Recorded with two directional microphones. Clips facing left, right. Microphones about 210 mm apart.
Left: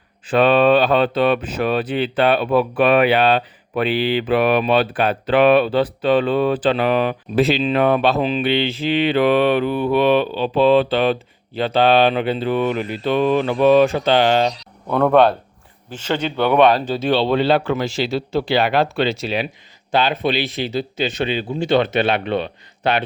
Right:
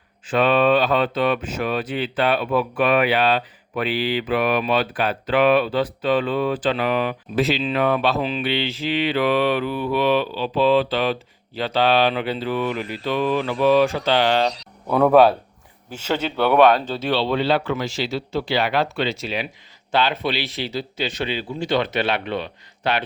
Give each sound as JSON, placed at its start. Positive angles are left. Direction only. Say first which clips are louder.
{"t": 0.3, "sound": "speech", "louder": "left 4 dB", "side_deg": 30}
{"t": 14.8, "sound": "speech", "louder": "even", "side_deg": -5}
{"t": 16.8, "sound": "speech", "louder": "left 4 dB", "side_deg": 15}
{"t": 17.6, "sound": "speech", "louder": "left 4 dB", "side_deg": 30}
{"t": 18.4, "sound": "speech", "louder": "left 4 dB", "side_deg": 55}
{"t": 18.9, "sound": "speech", "louder": "left 4 dB", "side_deg": 35}
{"t": 19.9, "sound": "speech", "louder": "left 3 dB", "side_deg": 15}